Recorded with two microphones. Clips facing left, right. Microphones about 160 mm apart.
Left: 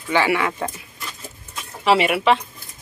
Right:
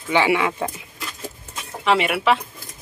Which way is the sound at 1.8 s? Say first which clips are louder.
Left 2 dB; centre (ahead or behind).